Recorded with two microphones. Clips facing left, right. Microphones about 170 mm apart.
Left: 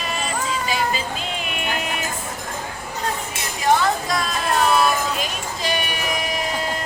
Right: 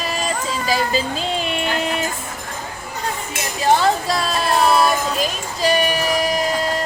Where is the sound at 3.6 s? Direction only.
30° right (ahead or behind).